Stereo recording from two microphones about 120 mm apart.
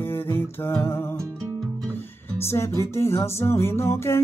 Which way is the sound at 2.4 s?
20° left (ahead or behind).